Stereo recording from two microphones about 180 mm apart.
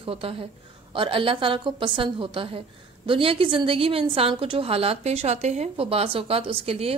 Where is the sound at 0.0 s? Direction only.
30° right (ahead or behind).